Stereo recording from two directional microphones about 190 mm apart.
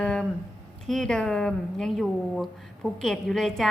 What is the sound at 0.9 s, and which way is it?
A woman's voice, centre (ahead or behind).